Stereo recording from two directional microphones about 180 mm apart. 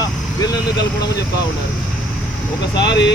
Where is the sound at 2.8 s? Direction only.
75° left (ahead or behind).